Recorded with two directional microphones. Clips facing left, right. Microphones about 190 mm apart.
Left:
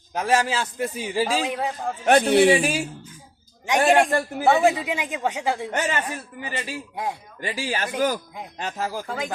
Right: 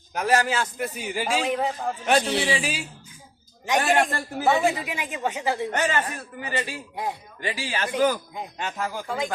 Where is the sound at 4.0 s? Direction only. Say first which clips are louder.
Left 4 dB; 15° left (ahead or behind).